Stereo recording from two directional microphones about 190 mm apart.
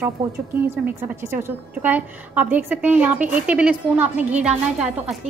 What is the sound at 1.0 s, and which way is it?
A woman's voice, 15° right (ahead or behind).